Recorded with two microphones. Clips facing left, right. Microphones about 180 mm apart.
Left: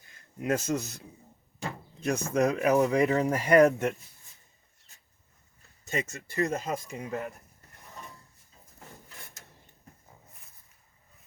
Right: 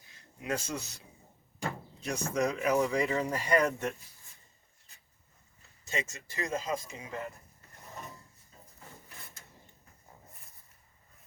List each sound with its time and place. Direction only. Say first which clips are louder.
0.3 s speech: left 7 dB; 45° left (ahead or behind)
2.0 s speech: left 5 dB; 55° left (ahead or behind)
5.9 s speech: left 4 dB; 55° left (ahead or behind)